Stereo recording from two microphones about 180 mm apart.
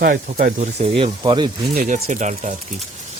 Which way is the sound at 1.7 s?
45° right (ahead or behind).